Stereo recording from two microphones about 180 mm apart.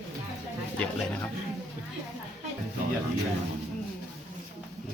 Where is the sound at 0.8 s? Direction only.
10° left (ahead or behind).